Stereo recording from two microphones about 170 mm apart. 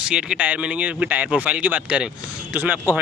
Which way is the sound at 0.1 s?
5° right (ahead or behind).